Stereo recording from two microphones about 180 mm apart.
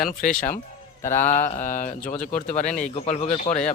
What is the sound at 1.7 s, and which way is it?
Speech, 45° left (ahead or behind).